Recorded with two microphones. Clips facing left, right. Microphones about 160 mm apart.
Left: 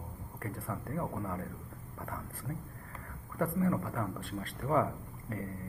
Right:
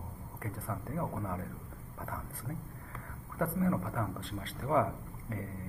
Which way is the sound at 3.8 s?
Centre (ahead or behind).